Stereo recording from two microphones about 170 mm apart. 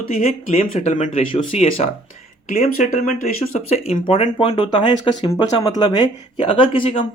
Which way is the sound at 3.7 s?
35° left (ahead or behind).